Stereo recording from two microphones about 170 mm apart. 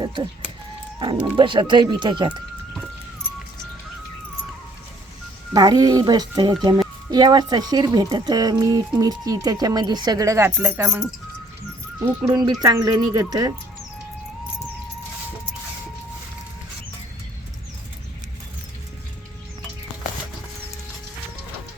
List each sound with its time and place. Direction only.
0.0 s chicken: 25° right (ahead or behind)
0.9 s speech: 30° right (ahead or behind)
5.5 s speech: 20° right (ahead or behind)
12.2 s speech: 20° right (ahead or behind)